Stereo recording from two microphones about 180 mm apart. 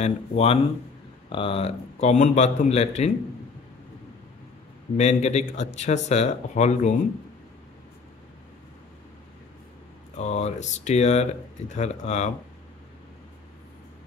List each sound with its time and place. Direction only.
0.0 s speech: 35° left (ahead or behind)
4.9 s speech: 40° left (ahead or behind)
10.1 s speech: 40° left (ahead or behind)